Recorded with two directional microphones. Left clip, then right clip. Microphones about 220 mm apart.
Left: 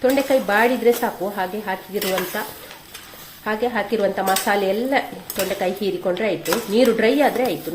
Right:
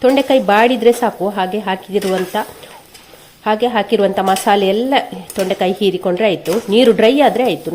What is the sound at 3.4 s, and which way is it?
Speech, 40° right (ahead or behind).